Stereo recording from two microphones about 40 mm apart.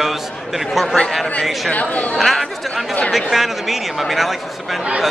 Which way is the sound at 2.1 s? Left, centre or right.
Centre.